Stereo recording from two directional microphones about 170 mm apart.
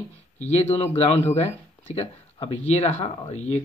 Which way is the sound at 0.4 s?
40° left (ahead or behind).